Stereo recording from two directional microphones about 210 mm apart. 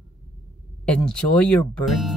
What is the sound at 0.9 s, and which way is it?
Speech, 5° left (ahead or behind).